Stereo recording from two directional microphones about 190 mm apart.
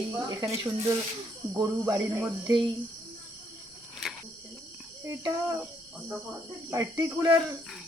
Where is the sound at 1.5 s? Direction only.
20° right (ahead or behind).